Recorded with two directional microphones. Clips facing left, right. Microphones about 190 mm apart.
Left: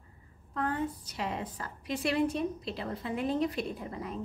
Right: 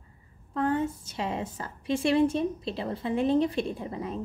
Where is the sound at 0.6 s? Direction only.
25° right (ahead or behind).